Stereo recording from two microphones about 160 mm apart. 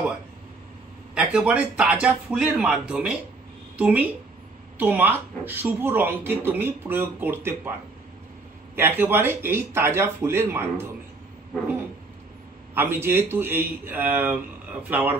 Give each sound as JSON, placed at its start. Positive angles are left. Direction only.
{"t": 1.1, "sound": "speech", "side_deg": -5}
{"t": 8.7, "sound": "speech", "side_deg": -15}
{"t": 12.7, "sound": "speech", "side_deg": -15}